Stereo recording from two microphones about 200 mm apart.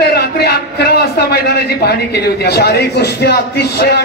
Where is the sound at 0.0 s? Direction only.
55° left (ahead or behind).